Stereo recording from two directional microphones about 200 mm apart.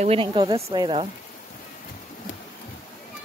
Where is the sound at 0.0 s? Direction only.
30° right (ahead or behind).